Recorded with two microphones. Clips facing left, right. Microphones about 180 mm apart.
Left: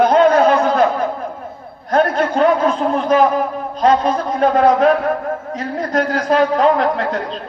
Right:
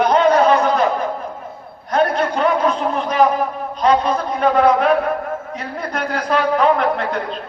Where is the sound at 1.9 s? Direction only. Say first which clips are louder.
Left 2 dB; 45° left (ahead or behind).